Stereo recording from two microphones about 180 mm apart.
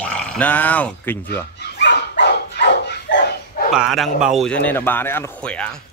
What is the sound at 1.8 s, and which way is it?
Dog, 75° left (ahead or behind).